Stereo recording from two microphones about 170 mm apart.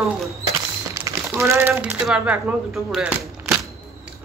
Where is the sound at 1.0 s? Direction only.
15° right (ahead or behind).